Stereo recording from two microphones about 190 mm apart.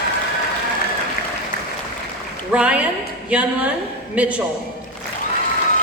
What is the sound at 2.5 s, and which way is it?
A woman's voice, 5° right (ahead or behind).